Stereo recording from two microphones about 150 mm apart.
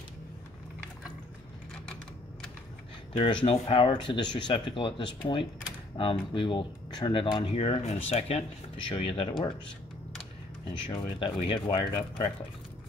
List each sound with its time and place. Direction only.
3.1 s speech: 35° left (ahead or behind)
10.7 s speech: 35° left (ahead or behind)